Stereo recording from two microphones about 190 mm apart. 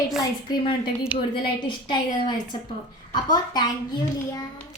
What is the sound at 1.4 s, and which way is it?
A woman's voice, 25° left (ahead or behind).